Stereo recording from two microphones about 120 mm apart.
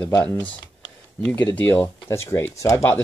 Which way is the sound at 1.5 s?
15° left (ahead or behind).